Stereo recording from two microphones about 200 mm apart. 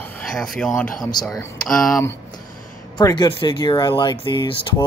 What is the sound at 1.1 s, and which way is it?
Speech, 15° left (ahead or behind).